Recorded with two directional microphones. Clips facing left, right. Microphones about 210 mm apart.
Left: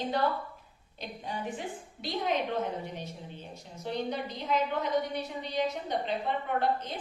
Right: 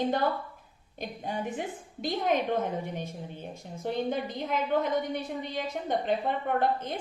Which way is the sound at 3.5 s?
50° right (ahead or behind).